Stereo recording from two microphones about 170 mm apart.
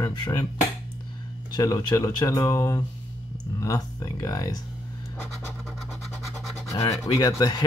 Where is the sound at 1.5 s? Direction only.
25° left (ahead or behind).